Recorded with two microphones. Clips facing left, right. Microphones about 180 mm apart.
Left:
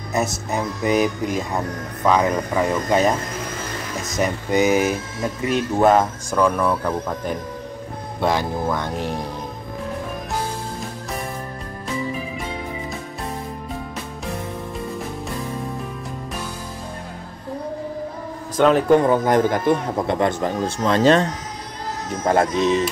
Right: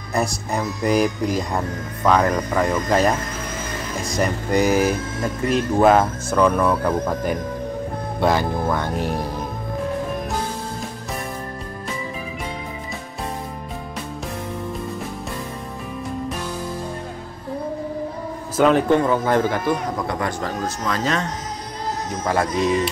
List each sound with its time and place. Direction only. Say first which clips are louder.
0.1 s speech: even; centre (ahead or behind)
4.2 s speech: left 1 dB; centre (ahead or behind)
18.6 s speech: left 1 dB; centre (ahead or behind)
19.0 s speech: left 2 dB; 15° left (ahead or behind)